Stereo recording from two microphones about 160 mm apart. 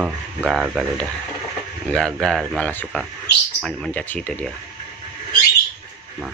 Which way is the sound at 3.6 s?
Centre (ahead or behind).